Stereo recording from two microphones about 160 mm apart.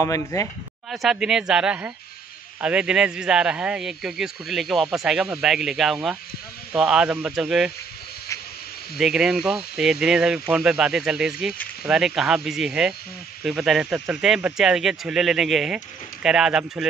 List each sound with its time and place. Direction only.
0.0 s speech: 20° left (ahead or behind)
0.8 s speech: centre (ahead or behind)
8.9 s speech: 5° right (ahead or behind)